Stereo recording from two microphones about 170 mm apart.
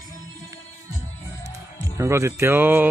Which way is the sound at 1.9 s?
15° right (ahead or behind).